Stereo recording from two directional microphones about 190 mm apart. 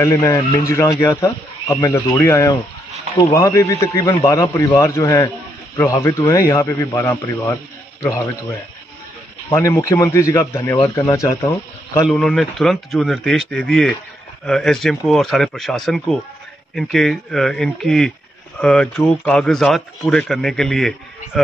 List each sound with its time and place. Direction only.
0.0 s a man's voice: 15° left (ahead or behind)
9.5 s a man's voice: 15° left (ahead or behind)
12.1 s speech: centre (ahead or behind)